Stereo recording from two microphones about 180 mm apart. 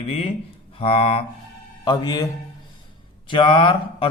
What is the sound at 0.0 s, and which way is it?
Speech, 35° left (ahead or behind).